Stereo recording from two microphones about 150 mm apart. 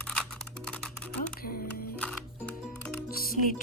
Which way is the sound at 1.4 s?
75° left (ahead or behind).